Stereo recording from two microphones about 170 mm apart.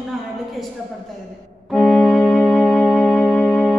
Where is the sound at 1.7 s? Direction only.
5° left (ahead or behind).